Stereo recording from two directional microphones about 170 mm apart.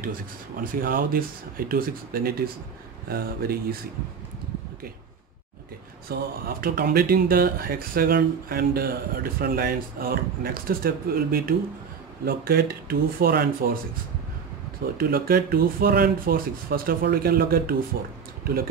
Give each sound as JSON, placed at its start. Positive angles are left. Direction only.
{"t": 0.7, "sound": "speech", "side_deg": -55}
{"t": 6.0, "sound": "speech", "side_deg": -60}
{"t": 15.0, "sound": "speech", "side_deg": -60}